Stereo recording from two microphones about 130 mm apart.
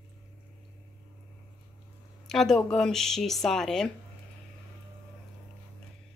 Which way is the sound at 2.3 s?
5° left (ahead or behind).